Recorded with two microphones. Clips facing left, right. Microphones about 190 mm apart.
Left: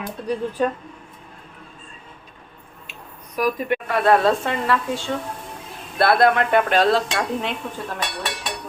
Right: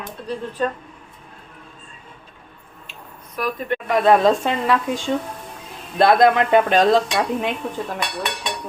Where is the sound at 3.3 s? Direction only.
10° left (ahead or behind).